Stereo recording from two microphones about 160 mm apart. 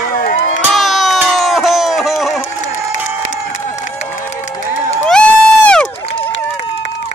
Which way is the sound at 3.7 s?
50° left (ahead or behind).